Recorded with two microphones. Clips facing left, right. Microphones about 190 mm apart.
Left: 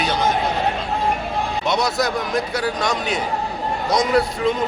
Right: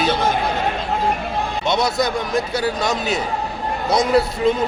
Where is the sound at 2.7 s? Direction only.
5° right (ahead or behind).